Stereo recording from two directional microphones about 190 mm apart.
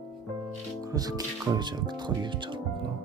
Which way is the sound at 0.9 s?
20° right (ahead or behind).